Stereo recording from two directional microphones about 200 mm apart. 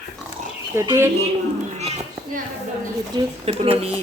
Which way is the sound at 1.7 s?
35° right (ahead or behind).